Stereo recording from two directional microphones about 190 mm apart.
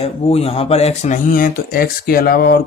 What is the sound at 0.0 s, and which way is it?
Speech, 30° left (ahead or behind).